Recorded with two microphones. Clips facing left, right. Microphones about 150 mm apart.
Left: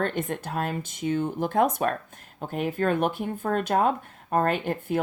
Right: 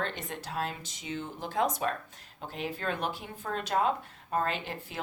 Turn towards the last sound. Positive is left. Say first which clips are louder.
# left 10 dB
turn(degrees=50)  # may be behind; listen again after turning